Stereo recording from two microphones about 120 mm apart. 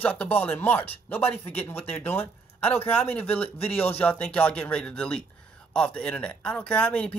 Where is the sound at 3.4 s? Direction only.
55° left (ahead or behind).